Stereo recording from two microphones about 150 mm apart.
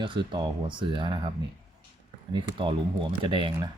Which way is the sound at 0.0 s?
35° right (ahead or behind).